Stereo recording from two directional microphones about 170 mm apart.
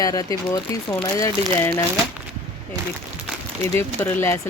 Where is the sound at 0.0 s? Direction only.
20° left (ahead or behind).